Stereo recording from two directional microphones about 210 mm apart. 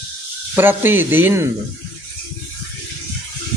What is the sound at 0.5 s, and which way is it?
Speech, 10° right (ahead or behind).